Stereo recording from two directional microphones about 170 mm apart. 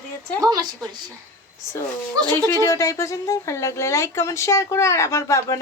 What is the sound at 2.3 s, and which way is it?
Speech, 15° left (ahead or behind).